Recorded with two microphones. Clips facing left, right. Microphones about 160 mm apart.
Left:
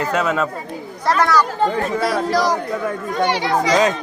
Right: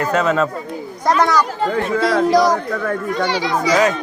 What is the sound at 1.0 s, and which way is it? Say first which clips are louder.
Speech: right 1 dB; 15° right (ahead or behind).